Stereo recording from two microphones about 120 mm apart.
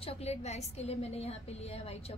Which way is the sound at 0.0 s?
60° left (ahead or behind).